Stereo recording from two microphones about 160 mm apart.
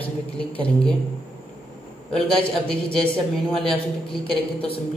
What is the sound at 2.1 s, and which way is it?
Speech, 5° left (ahead or behind).